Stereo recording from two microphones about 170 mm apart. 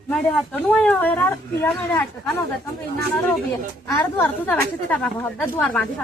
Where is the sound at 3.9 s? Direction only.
15° left (ahead or behind).